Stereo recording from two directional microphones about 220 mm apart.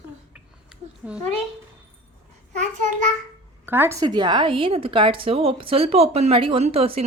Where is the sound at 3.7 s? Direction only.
10° right (ahead or behind).